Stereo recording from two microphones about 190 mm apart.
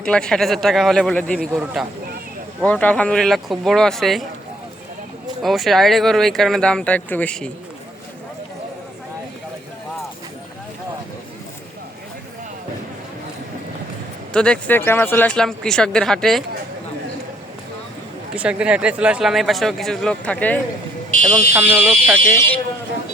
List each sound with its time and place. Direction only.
0.0 s speech: 5° left (ahead or behind)
5.4 s speech: centre (ahead or behind)
14.3 s speech: 5° left (ahead or behind)
18.3 s speech: 5° right (ahead or behind)
21.2 s speech: 15° right (ahead or behind)
22.3 s speech: 15° left (ahead or behind)